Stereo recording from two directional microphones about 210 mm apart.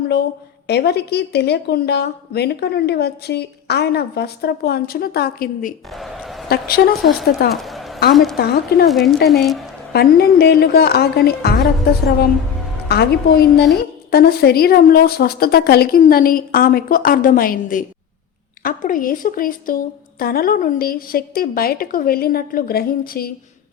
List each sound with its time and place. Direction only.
0.7 s a woman's voice: 50° left (ahead or behind)
5.9 s a sound: centre (ahead or behind)
6.5 s a woman's voice: 45° left (ahead or behind)
7.5 s a sound: centre (ahead or behind)
8.1 s a woman's voice: centre (ahead or behind)
9.9 s a woman's voice: 50° left (ahead or behind)
12.9 s a woman's voice: 50° left (ahead or behind)